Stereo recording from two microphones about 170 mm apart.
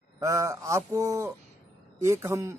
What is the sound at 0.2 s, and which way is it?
A man's voice, 20° right (ahead or behind).